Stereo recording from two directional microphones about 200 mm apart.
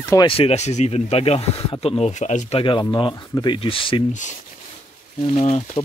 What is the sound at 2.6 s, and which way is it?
Speech, 25° left (ahead or behind).